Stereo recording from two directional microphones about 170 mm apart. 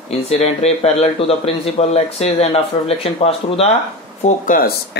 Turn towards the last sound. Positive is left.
turn(degrees=60)  # may be behind; listen again after turning